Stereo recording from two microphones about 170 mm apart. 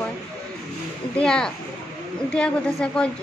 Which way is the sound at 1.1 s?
5° left (ahead or behind).